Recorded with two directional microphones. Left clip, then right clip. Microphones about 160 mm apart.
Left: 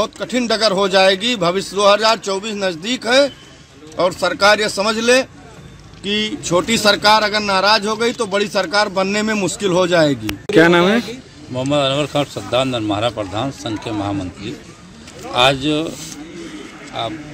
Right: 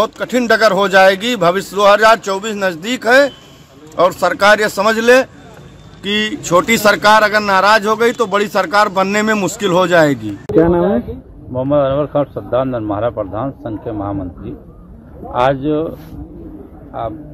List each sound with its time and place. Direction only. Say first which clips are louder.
0.0 s speech: right 4 dB; 10° right (ahead or behind)
10.5 s speech: left 1 dB; 25° left (ahead or behind)
11.5 s speech: right 3 dB; 10° left (ahead or behind)